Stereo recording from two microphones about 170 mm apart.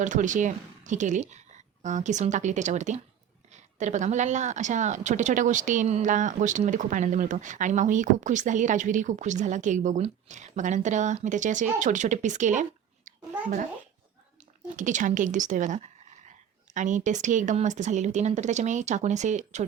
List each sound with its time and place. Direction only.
0.0 s a woman's voice: 45° right (ahead or behind)
13.1 s a sound: 45° right (ahead or behind)
14.8 s a woman's voice: 45° right (ahead or behind)